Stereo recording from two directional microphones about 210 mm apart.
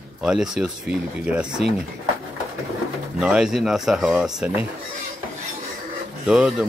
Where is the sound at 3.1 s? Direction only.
5° right (ahead or behind).